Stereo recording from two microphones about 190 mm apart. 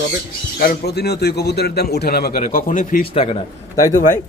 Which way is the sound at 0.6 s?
55° left (ahead or behind).